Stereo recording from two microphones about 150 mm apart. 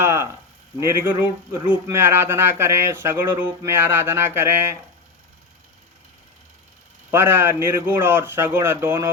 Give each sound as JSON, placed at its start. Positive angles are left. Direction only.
{"t": 0.0, "sound": "a sound", "side_deg": -15}
{"t": 0.8, "sound": "speech", "side_deg": -15}
{"t": 7.1, "sound": "speech", "side_deg": -15}